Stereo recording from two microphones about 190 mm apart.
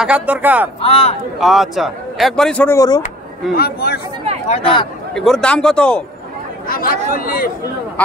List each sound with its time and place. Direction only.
0.0 s speech: 5° right (ahead or behind)
0.7 s speech: 30° left (ahead or behind)
1.4 s speech: centre (ahead or behind); by 3.0 s 15° left (ahead or behind)
3.5 s a man's voice: 55° left (ahead or behind)
4.5 s speech: 30° left (ahead or behind)
5.1 s speech: 5° left (ahead or behind)
6.7 s speech: 50° left (ahead or behind)